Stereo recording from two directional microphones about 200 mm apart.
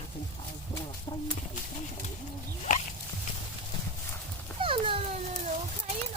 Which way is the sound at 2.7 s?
40° left (ahead or behind).